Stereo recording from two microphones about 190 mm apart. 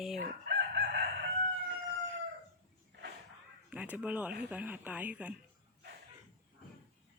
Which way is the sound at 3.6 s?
10° right (ahead or behind).